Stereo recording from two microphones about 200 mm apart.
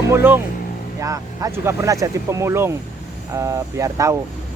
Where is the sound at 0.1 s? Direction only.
10° right (ahead or behind).